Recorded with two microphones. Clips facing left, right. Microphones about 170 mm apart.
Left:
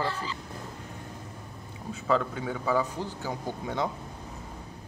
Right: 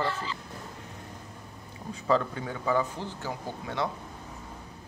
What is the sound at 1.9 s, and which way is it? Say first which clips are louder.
A man's voice: right 1 dB; centre (ahead or behind).